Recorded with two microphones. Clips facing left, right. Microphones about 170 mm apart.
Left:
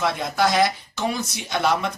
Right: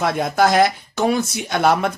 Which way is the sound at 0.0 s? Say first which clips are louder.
Right 4 dB; 50° right (ahead or behind).